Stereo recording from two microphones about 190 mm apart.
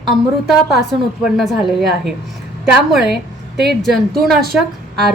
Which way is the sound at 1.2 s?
Centre (ahead or behind).